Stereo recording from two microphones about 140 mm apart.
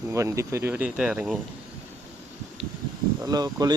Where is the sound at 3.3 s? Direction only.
30° right (ahead or behind).